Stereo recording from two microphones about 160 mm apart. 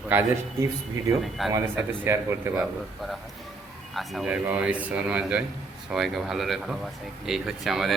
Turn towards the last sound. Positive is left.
turn(degrees=0)  # may be behind; listen again after turning